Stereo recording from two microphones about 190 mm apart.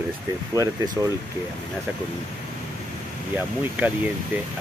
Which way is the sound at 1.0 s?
15° right (ahead or behind).